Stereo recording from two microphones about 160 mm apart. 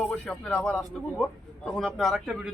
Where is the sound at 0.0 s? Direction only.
10° left (ahead or behind).